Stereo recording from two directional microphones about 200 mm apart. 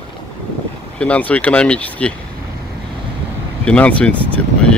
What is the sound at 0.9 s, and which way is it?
Speech, 5° left (ahead or behind).